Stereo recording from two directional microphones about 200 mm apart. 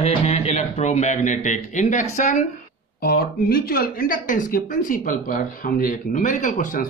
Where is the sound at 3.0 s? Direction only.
50° left (ahead or behind).